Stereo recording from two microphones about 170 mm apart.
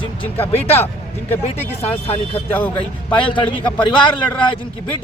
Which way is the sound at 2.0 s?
35° left (ahead or behind).